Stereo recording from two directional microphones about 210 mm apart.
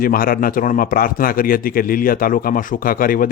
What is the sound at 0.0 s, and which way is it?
A man's voice, 45° left (ahead or behind).